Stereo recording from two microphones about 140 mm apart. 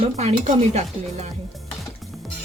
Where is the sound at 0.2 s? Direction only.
50° right (ahead or behind).